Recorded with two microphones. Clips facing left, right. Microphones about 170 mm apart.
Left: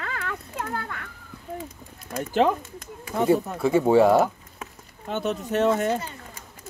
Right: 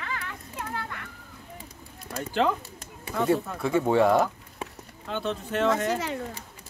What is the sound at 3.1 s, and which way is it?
Speech, 30° left (ahead or behind).